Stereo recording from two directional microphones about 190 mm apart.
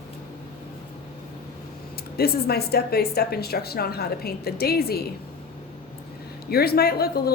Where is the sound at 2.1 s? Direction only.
55° left (ahead or behind).